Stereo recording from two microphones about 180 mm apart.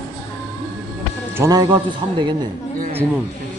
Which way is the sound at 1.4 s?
20° right (ahead or behind).